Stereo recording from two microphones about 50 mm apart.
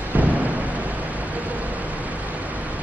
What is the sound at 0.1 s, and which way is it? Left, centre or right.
Thunder, right.